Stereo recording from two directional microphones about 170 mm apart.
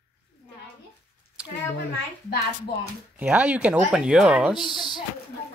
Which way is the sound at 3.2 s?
10° right (ahead or behind).